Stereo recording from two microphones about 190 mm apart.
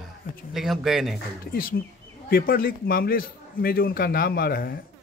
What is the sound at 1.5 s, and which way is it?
A man's voice, 50° left (ahead or behind).